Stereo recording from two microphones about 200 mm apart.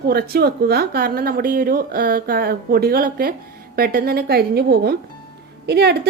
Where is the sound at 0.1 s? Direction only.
50° right (ahead or behind).